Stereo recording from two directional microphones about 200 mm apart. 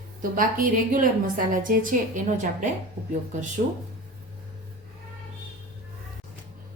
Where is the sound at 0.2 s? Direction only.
45° right (ahead or behind).